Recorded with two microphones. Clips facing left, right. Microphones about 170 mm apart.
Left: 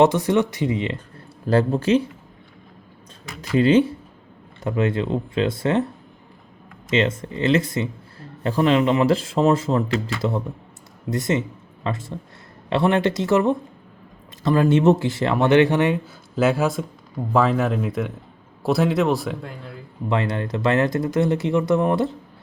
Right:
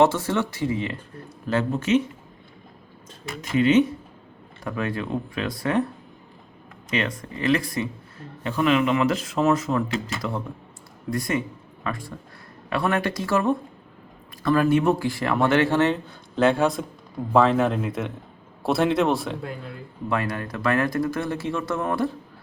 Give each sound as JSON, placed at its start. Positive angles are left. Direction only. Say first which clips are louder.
{"t": 0.0, "sound": "speech", "louder": "left 3 dB", "side_deg": 15}
{"t": 1.5, "sound": "speech", "louder": "left 4 dB", "side_deg": 35}
{"t": 3.6, "sound": "speech", "louder": "left 2 dB", "side_deg": 30}
{"t": 6.9, "sound": "speech", "louder": "left 6 dB", "side_deg": 25}
{"t": 8.4, "sound": "speech", "louder": "left 3 dB", "side_deg": 30}
{"t": 16.0, "sound": "a man's voice", "louder": "even", "side_deg": 5}
{"t": 20.1, "sound": "speech", "louder": "left 3 dB", "side_deg": 25}